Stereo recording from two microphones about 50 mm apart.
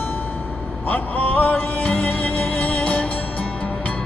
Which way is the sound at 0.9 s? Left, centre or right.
Left.